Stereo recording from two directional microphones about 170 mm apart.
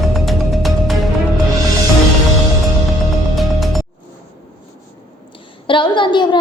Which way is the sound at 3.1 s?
Centre (ahead or behind).